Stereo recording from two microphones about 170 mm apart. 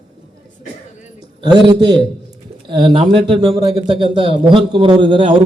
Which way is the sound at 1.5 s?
25° right (ahead or behind).